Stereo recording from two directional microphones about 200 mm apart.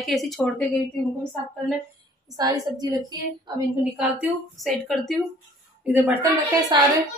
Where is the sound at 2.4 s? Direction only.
20° right (ahead or behind).